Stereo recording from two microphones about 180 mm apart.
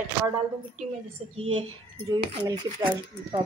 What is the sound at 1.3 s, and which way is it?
A woman's voice, 30° right (ahead or behind).